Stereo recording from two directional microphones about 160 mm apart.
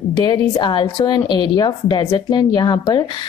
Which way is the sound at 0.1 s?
25° left (ahead or behind).